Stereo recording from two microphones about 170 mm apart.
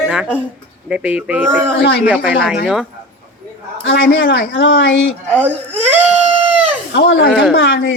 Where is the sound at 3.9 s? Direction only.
90° left.